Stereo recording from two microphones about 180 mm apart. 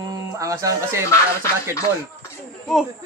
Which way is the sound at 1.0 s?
15° left (ahead or behind).